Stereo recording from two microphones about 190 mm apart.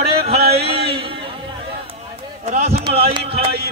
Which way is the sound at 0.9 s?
25° right (ahead or behind).